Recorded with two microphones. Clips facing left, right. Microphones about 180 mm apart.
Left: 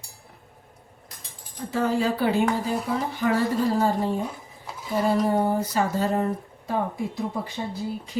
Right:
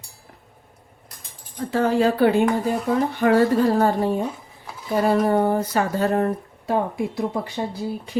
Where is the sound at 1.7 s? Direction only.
65° right (ahead or behind).